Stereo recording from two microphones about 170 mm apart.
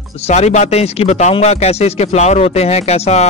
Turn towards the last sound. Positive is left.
turn(degrees=40)  # may be behind; listen again after turning